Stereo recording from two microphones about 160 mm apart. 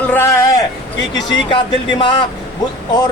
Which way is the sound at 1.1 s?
30° left (ahead or behind).